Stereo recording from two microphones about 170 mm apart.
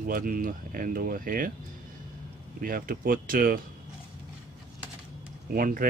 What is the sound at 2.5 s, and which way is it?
Speech, 55° right (ahead or behind).